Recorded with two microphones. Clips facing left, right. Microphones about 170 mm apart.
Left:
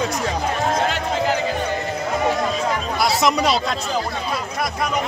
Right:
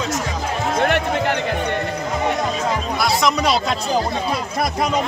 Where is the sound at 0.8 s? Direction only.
65° right (ahead or behind).